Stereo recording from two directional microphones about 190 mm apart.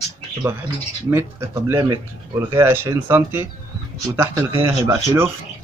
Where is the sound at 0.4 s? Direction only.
10° right (ahead or behind).